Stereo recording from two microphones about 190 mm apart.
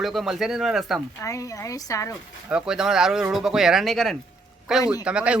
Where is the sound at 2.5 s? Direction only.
5° right (ahead or behind).